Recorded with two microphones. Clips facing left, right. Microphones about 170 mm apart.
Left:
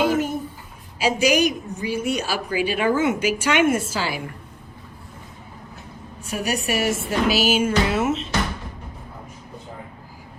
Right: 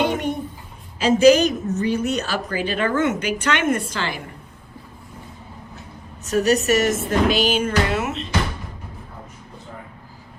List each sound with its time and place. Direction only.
0.0 s a woman's voice: 5° left (ahead or behind)
6.2 s a woman's voice: 10° left (ahead or behind)